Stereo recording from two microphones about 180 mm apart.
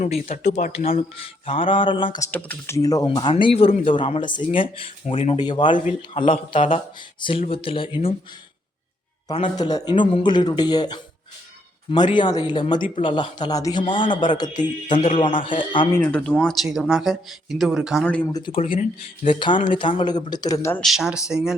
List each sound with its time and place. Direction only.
0.0 s speech: 40° left (ahead or behind)
9.3 s speech: 25° left (ahead or behind)
12.1 s speech: 25° left (ahead or behind)
15.9 s speech: 10° left (ahead or behind)
18.3 s speech: 25° left (ahead or behind)
18.6 s speech: 35° left (ahead or behind)
19.5 s speech: 50° left (ahead or behind)
19.8 s speech: 30° left (ahead or behind)
20.8 s speech: centre (ahead or behind)